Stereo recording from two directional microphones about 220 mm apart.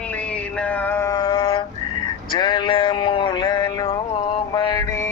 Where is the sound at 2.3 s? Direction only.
20° left (ahead or behind).